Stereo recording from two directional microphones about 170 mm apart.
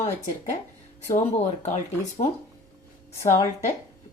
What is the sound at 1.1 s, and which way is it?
Speech, 45° left (ahead or behind).